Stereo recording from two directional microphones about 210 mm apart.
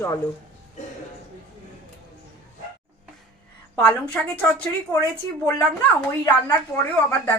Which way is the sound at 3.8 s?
5° left (ahead or behind).